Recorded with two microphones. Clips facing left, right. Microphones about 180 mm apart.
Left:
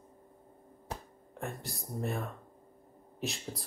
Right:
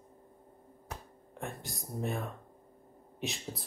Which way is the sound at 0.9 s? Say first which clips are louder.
Left 3 dB; 35° left (ahead or behind).